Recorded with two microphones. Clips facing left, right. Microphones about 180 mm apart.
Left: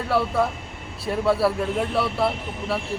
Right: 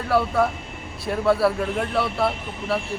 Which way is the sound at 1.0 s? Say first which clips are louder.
Right 1 dB; centre (ahead or behind).